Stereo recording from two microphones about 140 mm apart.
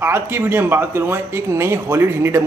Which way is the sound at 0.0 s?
15° right (ahead or behind).